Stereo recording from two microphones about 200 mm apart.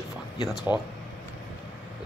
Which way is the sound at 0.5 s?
Centre (ahead or behind).